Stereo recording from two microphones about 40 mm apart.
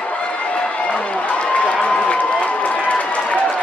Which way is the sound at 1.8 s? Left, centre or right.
Left.